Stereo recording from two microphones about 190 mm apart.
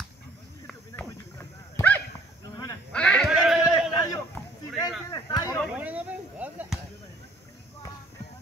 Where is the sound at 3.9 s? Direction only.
20° left (ahead or behind).